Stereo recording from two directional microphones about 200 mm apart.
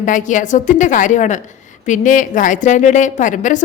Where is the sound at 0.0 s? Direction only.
40° left (ahead or behind).